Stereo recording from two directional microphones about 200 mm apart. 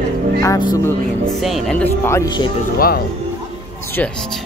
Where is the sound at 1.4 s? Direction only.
Centre (ahead or behind).